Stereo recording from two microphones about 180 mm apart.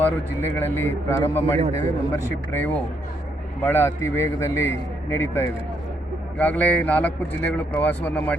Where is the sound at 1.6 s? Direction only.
40° right (ahead or behind).